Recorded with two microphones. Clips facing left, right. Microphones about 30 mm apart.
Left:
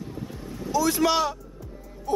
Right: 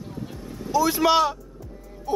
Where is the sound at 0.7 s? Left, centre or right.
Centre.